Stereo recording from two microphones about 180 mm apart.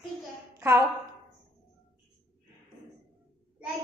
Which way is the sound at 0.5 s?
15° right (ahead or behind).